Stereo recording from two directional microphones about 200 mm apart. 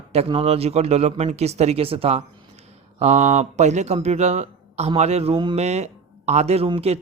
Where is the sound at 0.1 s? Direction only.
30° right (ahead or behind).